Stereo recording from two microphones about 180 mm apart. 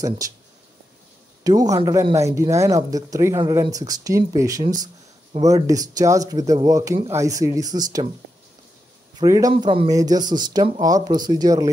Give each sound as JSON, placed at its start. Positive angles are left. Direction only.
{"t": 1.4, "sound": "speech", "side_deg": -20}
{"t": 9.2, "sound": "speech", "side_deg": -20}
{"t": 9.5, "sound": "speech", "side_deg": -30}